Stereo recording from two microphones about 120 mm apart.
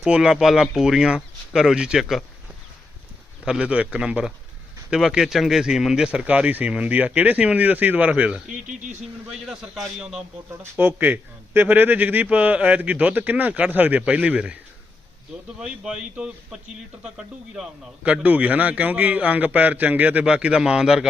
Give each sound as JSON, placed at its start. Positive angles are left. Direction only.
{"t": 0.0, "sound": "speech", "side_deg": -5}
{"t": 3.4, "sound": "a man's voice", "side_deg": -10}
{"t": 8.6, "sound": "speech", "side_deg": -90}
{"t": 9.5, "sound": "speech", "side_deg": -5}
{"t": 10.6, "sound": "a man's voice", "side_deg": -15}
{"t": 15.6, "sound": "a man's voice", "side_deg": -5}